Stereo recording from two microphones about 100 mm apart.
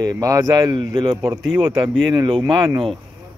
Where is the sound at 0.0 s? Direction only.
35° right (ahead or behind).